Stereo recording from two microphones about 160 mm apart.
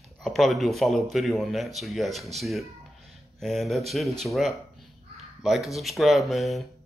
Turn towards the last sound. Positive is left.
turn(degrees=0)  # may be behind; listen again after turning